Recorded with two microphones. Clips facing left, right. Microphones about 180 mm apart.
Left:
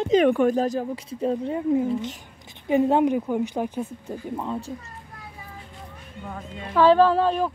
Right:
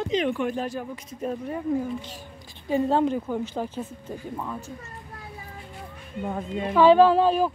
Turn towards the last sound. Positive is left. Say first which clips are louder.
# right 1 dB
turn(degrees=-5)  # may be behind; listen again after turning